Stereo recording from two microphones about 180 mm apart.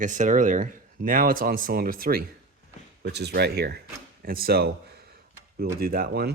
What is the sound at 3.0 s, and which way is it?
Speech, 65° right (ahead or behind).